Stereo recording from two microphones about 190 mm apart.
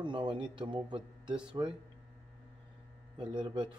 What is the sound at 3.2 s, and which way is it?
Speech, 25° right (ahead or behind).